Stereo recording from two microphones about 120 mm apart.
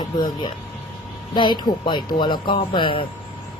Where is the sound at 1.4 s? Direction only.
40° left (ahead or behind).